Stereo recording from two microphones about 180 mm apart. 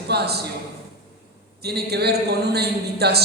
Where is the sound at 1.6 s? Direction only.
65° right (ahead or behind).